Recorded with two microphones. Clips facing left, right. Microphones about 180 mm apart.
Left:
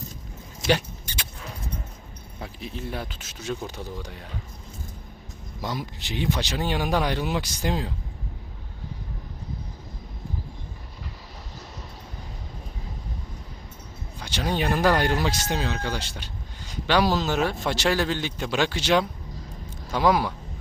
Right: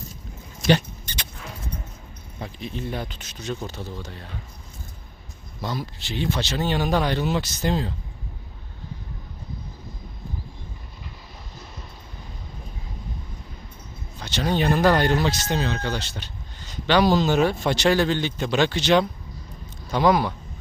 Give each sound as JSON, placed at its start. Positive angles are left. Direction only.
{"t": 0.7, "sound": "rodents", "side_deg": 10}
{"t": 2.4, "sound": "speech", "side_deg": 5}
{"t": 5.6, "sound": "speech", "side_deg": 15}
{"t": 14.2, "sound": "speech", "side_deg": 10}